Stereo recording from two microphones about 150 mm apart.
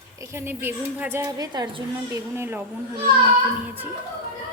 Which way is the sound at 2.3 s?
15° right (ahead or behind).